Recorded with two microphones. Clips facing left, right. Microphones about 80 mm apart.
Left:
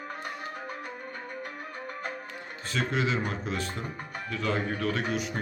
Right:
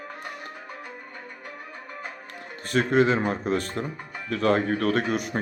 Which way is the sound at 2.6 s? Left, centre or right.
Right.